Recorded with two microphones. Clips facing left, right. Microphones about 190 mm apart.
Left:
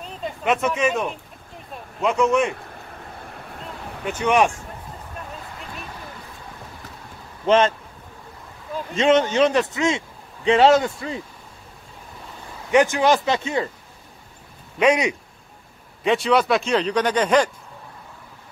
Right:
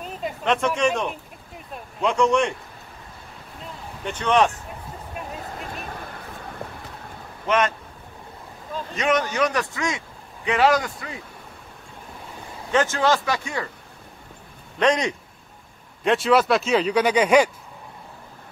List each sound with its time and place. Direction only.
0.4 s speech: 5° left (ahead or behind)
4.0 s a man's voice: 10° left (ahead or behind)
7.4 s speech: 30° left (ahead or behind)
8.9 s speech: 25° left (ahead or behind)
12.7 s speech: 15° left (ahead or behind)
14.8 s a man's voice: 10° left (ahead or behind); by 17.5 s 10° right (ahead or behind)